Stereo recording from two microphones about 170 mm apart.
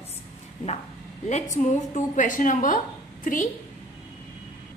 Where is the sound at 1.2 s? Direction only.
45° left (ahead or behind).